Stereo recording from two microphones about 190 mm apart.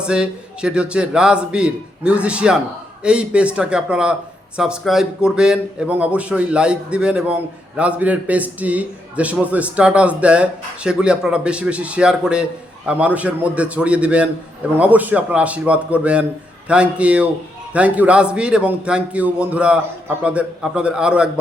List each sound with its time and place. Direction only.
0.0 s a man's voice: 5° right (ahead or behind)